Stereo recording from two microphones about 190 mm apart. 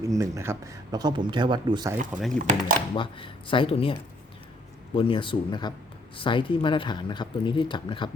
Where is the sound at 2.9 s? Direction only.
25° left (ahead or behind).